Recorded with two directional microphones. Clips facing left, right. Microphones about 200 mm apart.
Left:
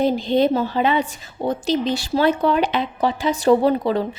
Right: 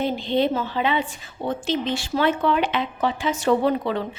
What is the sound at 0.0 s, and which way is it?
A woman's voice, 40° left (ahead or behind).